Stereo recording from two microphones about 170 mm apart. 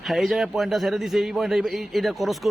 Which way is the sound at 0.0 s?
Centre (ahead or behind).